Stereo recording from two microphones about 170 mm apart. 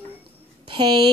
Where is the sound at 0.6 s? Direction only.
25° right (ahead or behind).